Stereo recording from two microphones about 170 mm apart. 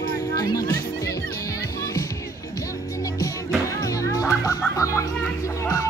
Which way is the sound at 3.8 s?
20° left (ahead or behind).